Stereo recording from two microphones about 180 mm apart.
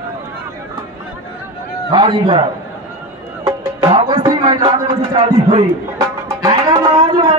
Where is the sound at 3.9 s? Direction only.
25° right (ahead or behind).